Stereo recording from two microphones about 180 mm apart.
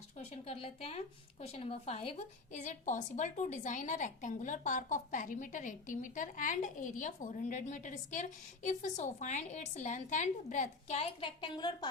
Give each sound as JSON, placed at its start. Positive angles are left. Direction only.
{"t": 0.2, "sound": "a woman's voice", "side_deg": 35}